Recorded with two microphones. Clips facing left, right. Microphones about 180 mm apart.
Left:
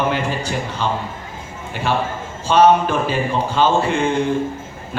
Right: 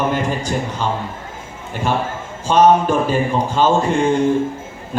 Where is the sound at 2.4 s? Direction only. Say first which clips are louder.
Right 1 dB; 45° right (ahead or behind).